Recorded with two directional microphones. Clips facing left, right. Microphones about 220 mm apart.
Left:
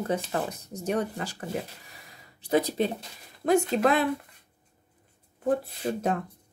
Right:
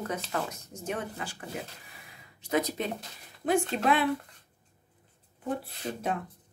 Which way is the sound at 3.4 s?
45° left (ahead or behind).